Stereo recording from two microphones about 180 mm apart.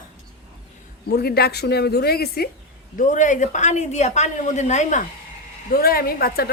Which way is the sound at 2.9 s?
45° left (ahead or behind).